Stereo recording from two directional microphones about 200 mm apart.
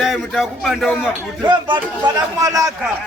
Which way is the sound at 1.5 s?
25° right (ahead or behind).